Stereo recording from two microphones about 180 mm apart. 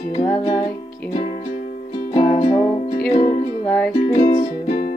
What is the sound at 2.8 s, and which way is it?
Music, 60° left (ahead or behind).